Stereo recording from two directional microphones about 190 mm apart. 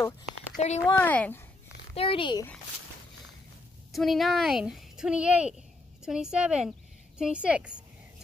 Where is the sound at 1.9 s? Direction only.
30° left (ahead or behind).